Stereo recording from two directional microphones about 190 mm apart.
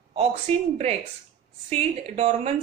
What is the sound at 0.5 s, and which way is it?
Speech, 35° right (ahead or behind).